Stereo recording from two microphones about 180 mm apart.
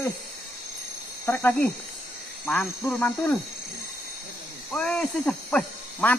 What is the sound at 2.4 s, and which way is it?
Speech, centre (ahead or behind).